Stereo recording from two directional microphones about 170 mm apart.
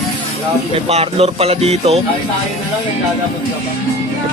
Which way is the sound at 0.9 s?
35° right (ahead or behind).